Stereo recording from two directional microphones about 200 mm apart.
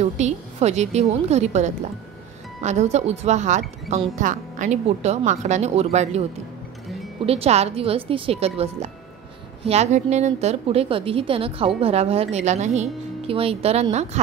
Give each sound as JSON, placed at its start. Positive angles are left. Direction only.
{"t": 0.0, "sound": "speech", "side_deg": -35}
{"t": 7.2, "sound": "a woman's voice", "side_deg": -30}